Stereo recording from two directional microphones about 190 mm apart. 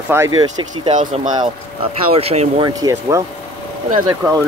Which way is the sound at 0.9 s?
40° right (ahead or behind).